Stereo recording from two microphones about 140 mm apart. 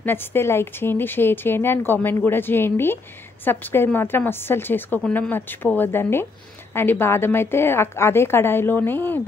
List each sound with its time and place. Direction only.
0.0 s speech: 15° left (ahead or behind)